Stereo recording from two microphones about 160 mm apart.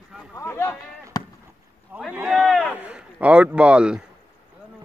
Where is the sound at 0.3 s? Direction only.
15° left (ahead or behind).